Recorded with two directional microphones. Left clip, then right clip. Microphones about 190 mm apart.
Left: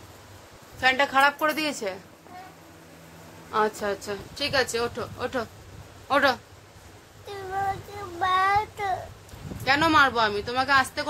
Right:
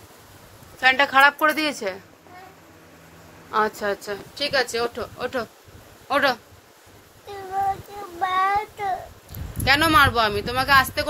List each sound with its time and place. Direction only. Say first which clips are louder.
0.9 s a woman's voice: right 6 dB; 5° right (ahead or behind)
3.5 s a woman's voice: right 3 dB; 15° right (ahead or behind)
8.2 s child singing: right 1 dB; 15° left (ahead or behind)
9.7 s a woman's voice: right 3 dB; 10° right (ahead or behind)